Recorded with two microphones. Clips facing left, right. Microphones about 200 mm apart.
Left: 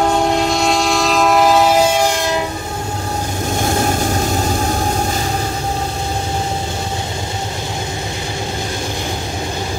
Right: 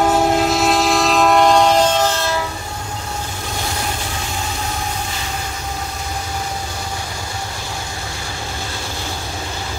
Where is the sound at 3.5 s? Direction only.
50° left (ahead or behind); by 9.1 s 20° left (ahead or behind).